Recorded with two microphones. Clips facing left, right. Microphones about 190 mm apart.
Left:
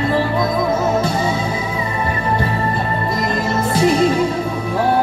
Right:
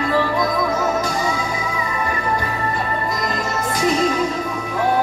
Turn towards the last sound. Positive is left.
turn(degrees=30)  # may be behind; listen again after turning